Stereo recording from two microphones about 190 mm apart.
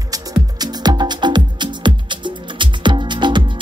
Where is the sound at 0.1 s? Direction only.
20° right (ahead or behind).